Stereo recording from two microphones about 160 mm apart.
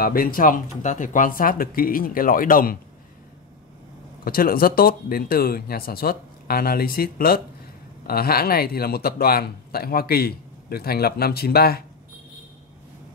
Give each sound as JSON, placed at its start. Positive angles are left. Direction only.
{"t": 0.0, "sound": "speech", "side_deg": 65}
{"t": 4.2, "sound": "speech", "side_deg": 65}